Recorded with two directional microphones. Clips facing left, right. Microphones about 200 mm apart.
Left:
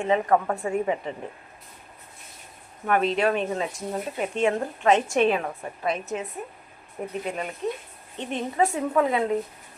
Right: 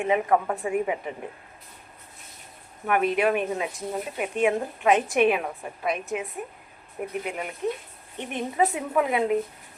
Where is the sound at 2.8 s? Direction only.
10° right (ahead or behind).